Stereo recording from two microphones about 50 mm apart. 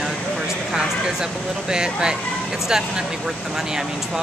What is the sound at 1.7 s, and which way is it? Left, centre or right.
Speech, centre.